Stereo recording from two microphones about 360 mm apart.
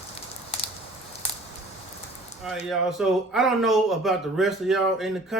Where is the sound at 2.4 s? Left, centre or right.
Centre.